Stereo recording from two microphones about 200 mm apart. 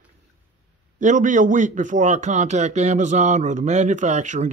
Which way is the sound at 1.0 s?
40° right (ahead or behind).